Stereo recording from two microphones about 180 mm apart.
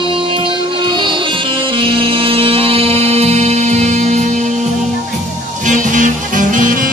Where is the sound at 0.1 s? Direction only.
30° right (ahead or behind).